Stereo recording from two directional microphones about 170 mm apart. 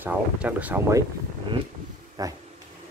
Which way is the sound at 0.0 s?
10° right (ahead or behind).